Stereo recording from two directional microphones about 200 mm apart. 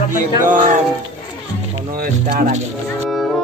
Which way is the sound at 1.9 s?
40° right (ahead or behind).